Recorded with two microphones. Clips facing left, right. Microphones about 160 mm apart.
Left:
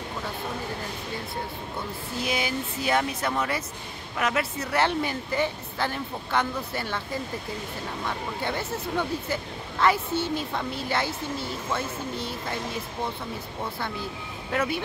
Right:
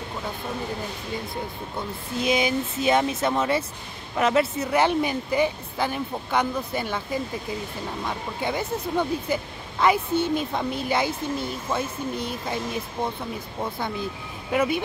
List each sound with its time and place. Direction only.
2.1 s speech: 20° right (ahead or behind)
14.5 s speech: 15° right (ahead or behind)